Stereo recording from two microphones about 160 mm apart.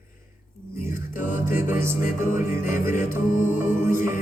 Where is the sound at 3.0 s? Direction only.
55° left (ahead or behind).